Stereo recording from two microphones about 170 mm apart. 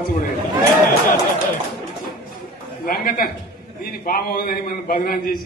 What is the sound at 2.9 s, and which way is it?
A man's voice, 60° left (ahead or behind).